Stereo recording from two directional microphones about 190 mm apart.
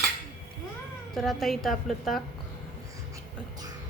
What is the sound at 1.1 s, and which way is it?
A woman's voice, centre (ahead or behind).